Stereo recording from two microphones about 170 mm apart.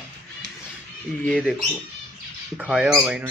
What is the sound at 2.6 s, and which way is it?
Speech, 5° right (ahead or behind).